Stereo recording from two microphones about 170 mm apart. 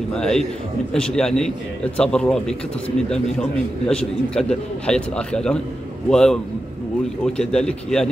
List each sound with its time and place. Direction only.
0.1 s a man's voice: 5° left (ahead or behind)